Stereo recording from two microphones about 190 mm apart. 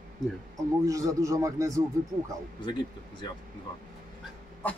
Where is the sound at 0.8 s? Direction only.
15° right (ahead or behind).